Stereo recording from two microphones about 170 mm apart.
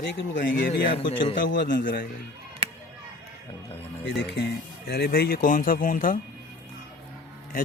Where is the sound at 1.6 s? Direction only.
55° left (ahead or behind).